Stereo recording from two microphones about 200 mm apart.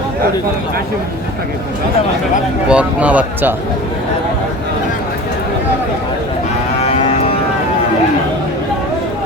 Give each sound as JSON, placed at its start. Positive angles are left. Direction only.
{"t": 2.6, "sound": "speech", "side_deg": -5}
{"t": 6.8, "sound": "cattle", "side_deg": 30}